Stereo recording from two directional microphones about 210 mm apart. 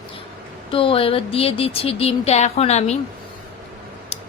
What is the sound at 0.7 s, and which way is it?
Speech, 25° left (ahead or behind).